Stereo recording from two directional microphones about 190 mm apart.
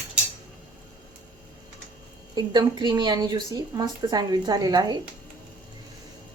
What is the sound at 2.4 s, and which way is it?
A woman's voice, 20° right (ahead or behind).